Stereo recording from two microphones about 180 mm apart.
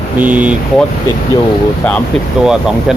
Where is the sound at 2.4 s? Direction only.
5° right (ahead or behind).